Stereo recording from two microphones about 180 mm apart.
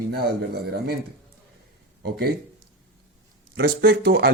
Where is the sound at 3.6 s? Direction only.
60° right (ahead or behind).